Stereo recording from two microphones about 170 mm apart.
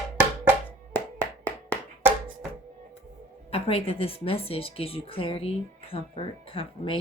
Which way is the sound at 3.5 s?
35° left (ahead or behind).